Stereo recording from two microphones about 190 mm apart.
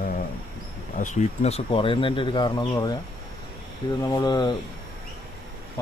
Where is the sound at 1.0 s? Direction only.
40° left (ahead or behind); by 2.9 s 20° left (ahead or behind).